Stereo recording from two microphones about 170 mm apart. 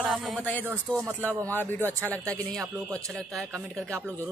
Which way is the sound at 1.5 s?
10° left (ahead or behind).